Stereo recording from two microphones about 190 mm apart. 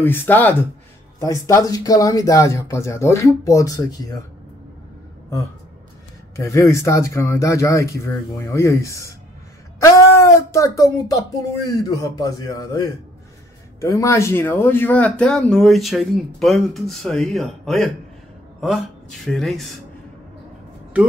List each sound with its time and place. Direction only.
0.0 s speech: 10° left (ahead or behind)
6.3 s speech: 15° left (ahead or behind)
9.8 s a sound: 15° left (ahead or behind)
11.6 s speech: 20° left (ahead or behind); by 17.9 s centre (ahead or behind)
19.2 s speech: centre (ahead or behind)